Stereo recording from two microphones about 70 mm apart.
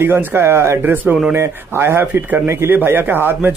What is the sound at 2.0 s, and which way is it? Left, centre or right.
A man's voice, right.